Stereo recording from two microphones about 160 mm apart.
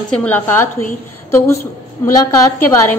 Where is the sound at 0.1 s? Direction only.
10° left (ahead or behind).